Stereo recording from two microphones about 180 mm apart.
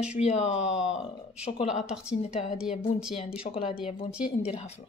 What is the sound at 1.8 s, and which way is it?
A woman's voice, 5° right (ahead or behind).